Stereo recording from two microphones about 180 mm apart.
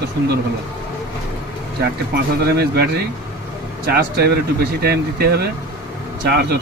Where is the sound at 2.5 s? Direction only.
65° right (ahead or behind).